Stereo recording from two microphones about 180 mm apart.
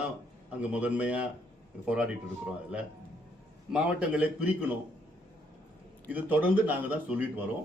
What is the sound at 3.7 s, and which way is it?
Speech, 5° right (ahead or behind).